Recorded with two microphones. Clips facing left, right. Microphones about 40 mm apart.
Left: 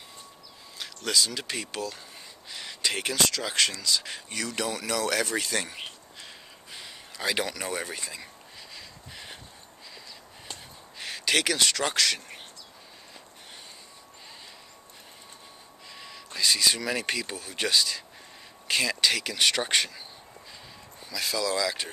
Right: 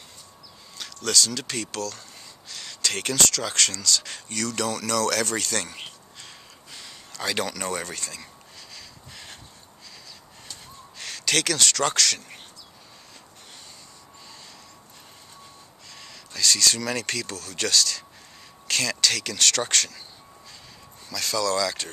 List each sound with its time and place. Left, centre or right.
0.7 s speech: centre
8.7 s a sound: centre
11.0 s speech: centre
16.0 s speech: centre
21.1 s speech: centre